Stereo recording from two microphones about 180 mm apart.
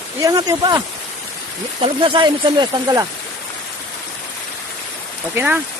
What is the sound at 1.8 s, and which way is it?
Speech, 25° right (ahead or behind).